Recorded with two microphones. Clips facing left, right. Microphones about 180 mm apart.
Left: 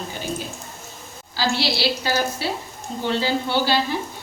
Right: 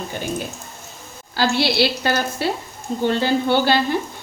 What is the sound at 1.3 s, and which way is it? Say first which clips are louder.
A woman's voice: right 5 dB; 55° right (ahead or behind).